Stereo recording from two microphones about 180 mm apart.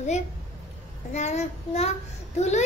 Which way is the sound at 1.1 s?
40° left (ahead or behind).